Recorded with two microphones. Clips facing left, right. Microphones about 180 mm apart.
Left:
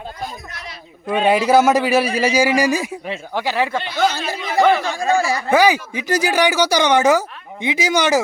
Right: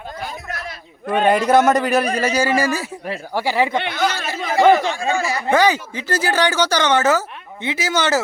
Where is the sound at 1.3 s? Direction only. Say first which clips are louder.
Left 1 dB; 5° left (ahead or behind).